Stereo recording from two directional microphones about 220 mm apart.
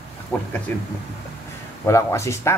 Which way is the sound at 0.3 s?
5° left (ahead or behind).